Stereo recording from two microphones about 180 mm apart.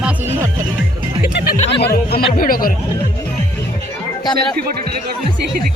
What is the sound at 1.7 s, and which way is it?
Snicker, 65° left (ahead or behind).